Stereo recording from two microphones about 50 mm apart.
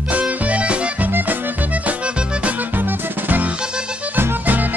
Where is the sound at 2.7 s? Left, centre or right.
Right.